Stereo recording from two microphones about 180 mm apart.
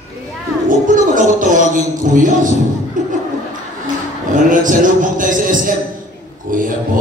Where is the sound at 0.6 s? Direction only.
45° right (ahead or behind).